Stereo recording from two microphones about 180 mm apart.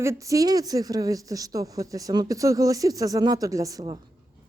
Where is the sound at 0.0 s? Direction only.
15° right (ahead or behind).